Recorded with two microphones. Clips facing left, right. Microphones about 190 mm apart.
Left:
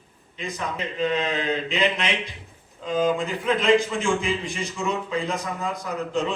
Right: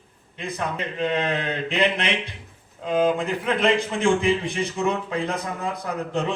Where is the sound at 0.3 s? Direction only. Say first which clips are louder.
Right 2 dB; 60° right (ahead or behind).